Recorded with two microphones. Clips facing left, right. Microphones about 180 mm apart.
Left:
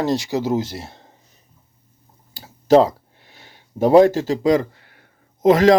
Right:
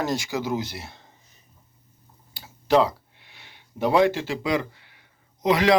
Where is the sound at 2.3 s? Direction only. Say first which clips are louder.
Left 7 dB; 40° left (ahead or behind).